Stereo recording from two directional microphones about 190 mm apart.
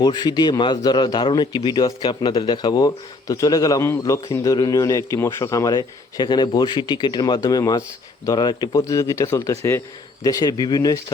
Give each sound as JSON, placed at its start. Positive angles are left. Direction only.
{"t": 0.0, "sound": "a man's voice", "side_deg": 25}